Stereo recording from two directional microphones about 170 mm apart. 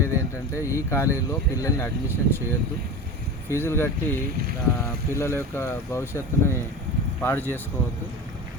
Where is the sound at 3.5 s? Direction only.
15° left (ahead or behind).